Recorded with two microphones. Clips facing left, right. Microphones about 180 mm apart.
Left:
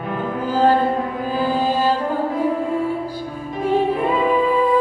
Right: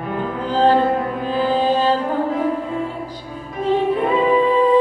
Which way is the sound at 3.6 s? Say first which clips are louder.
Right 1 dB; 10° left (ahead or behind).